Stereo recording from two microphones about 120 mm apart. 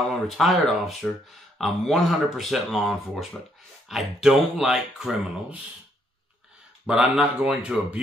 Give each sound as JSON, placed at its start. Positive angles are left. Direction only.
{"t": 0.3, "sound": "speech", "side_deg": 0}
{"t": 6.9, "sound": "speech", "side_deg": -5}